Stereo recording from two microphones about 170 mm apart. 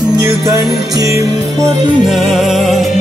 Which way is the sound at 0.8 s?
20° right (ahead or behind).